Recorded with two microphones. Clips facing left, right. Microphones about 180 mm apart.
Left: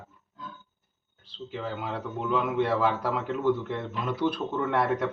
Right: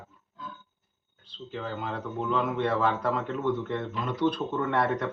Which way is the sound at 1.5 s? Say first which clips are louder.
Even; 5° left (ahead or behind).